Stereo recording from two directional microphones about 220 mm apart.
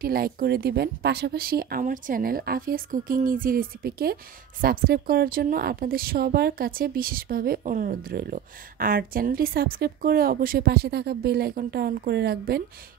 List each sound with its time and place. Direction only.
0.0 s speech: 40° right (ahead or behind)